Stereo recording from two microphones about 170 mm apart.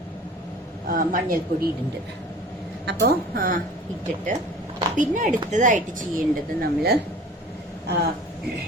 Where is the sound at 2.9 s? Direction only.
70° right (ahead or behind).